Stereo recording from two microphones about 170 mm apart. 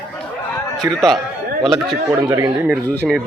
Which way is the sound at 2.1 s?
20° right (ahead or behind).